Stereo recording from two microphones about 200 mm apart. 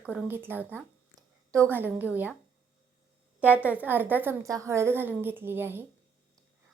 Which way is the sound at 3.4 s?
10° right (ahead or behind).